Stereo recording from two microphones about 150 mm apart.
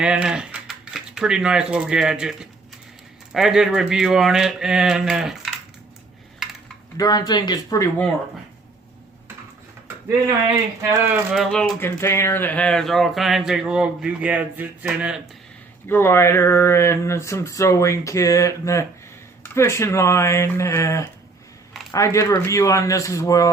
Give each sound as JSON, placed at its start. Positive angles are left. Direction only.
{"t": 0.0, "sound": "speech", "side_deg": -5}
{"t": 6.9, "sound": "speech", "side_deg": 25}
{"t": 10.1, "sound": "speech", "side_deg": -20}
{"t": 11.8, "sound": "speech", "side_deg": 15}
{"t": 15.9, "sound": "speech", "side_deg": 15}